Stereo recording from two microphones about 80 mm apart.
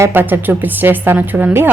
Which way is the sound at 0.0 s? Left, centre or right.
Right.